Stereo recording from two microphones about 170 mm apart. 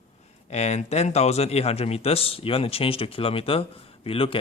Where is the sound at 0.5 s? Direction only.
40° left (ahead or behind).